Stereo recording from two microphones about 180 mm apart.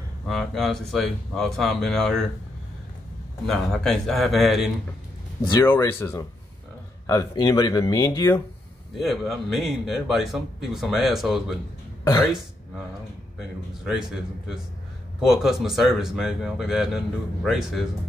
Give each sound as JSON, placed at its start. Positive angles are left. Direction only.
{"t": 0.3, "sound": "speech", "side_deg": 0}
{"t": 3.4, "sound": "speech", "side_deg": 0}
{"t": 5.7, "sound": "speech", "side_deg": 15}
{"t": 9.0, "sound": "speech", "side_deg": 0}
{"t": 15.2, "sound": "speech", "side_deg": 0}